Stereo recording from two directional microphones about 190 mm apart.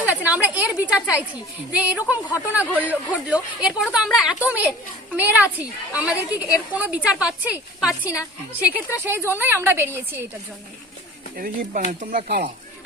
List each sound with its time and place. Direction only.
0.0 s a woman's voice: 10° right (ahead or behind)
11.3 s speech: 45° right (ahead or behind)